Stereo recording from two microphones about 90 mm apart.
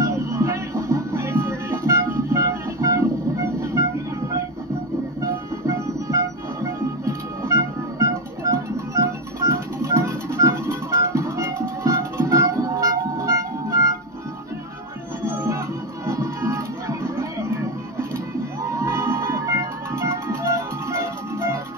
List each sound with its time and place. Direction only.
0.0 s music: 35° right (ahead or behind)
5.2 s music: 40° right (ahead or behind)
15.2 s music: 35° right (ahead or behind)
18.6 s music: 35° right (ahead or behind)